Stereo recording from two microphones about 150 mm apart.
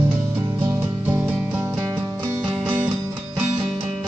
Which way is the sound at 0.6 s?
15° right (ahead or behind).